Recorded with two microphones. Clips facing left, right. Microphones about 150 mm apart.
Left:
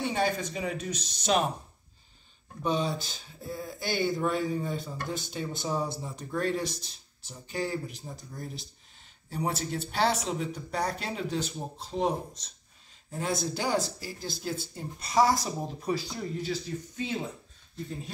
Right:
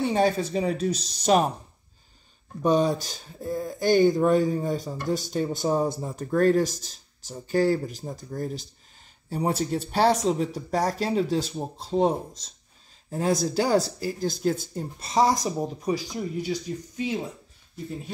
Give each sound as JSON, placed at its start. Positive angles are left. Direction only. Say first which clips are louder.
{"t": 0.1, "sound": "speech", "louder": "right 6 dB", "side_deg": -35}
{"t": 2.6, "sound": "speech", "louder": "right 7 dB", "side_deg": -45}
{"t": 14.8, "sound": "speech", "louder": "left 1 dB", "side_deg": -25}